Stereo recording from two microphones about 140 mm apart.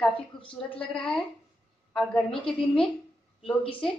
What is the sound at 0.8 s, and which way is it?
A woman's voice, 5° left (ahead or behind).